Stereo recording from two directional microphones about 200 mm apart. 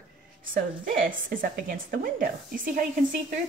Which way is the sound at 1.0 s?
45° right (ahead or behind).